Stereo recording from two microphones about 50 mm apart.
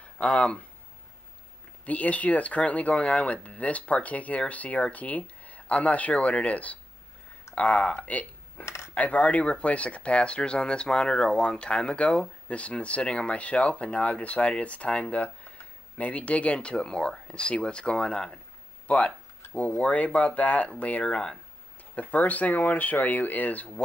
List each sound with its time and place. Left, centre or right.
0.2 s speech: left
1.9 s speech: left
7.6 s speech: centre
8.6 s cutlery: left
8.9 s speech: left
19.5 s speech: left
21.1 s speech: centre
22.1 s speech: left